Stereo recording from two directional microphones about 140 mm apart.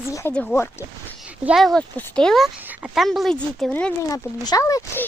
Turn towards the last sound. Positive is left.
turn(degrees=25)  # may be behind; listen again after turning